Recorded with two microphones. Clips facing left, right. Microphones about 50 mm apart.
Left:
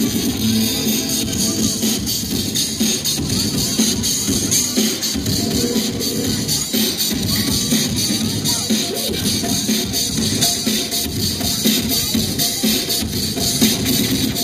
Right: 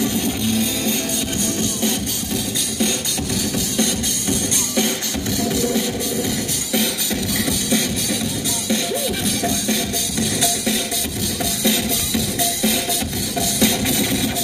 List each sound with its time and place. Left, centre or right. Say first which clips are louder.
1.6 s music: left 2 dB; right
3.7 s music: left 2 dB; right
13.6 s music: left 2 dB; right